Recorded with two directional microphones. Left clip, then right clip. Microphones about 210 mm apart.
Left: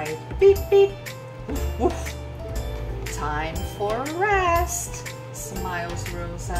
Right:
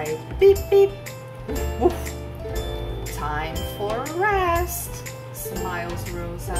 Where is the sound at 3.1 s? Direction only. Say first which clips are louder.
Even; 5° right (ahead or behind).